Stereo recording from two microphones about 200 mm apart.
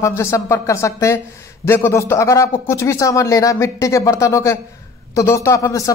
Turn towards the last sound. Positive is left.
turn(degrees=15)  # may be behind; listen again after turning